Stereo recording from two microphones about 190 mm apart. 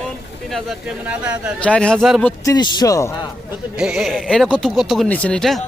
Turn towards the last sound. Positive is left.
turn(degrees=5)  # may be behind; listen again after turning